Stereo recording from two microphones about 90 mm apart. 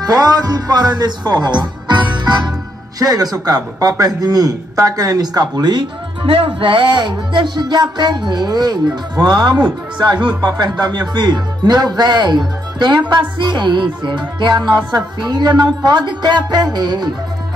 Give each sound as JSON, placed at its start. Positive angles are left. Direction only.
{"t": 0.0, "sound": "speech", "side_deg": -45}
{"t": 6.2, "sound": "speech", "side_deg": -90}
{"t": 13.1, "sound": "music", "side_deg": -60}
{"t": 14.9, "sound": "speech", "side_deg": -50}